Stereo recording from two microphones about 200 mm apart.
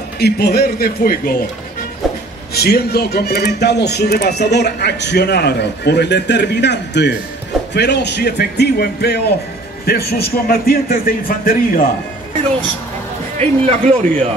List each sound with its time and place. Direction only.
0.2 s a man's voice: 50° left (ahead or behind)
2.5 s a man's voice: 50° left (ahead or behind)
13.4 s a man's voice: 35° right (ahead or behind)